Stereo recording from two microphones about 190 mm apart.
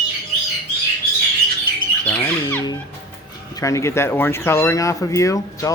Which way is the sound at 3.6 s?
15° left (ahead or behind).